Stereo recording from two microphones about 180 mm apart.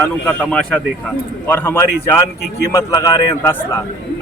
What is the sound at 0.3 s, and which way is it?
A man's voice, 5° left (ahead or behind).